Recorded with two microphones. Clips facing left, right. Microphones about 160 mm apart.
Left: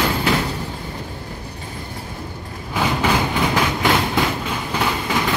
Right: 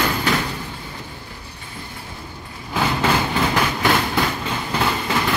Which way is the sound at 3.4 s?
15° left (ahead or behind).